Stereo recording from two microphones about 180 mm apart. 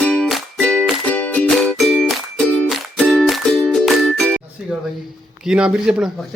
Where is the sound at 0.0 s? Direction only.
5° left (ahead or behind).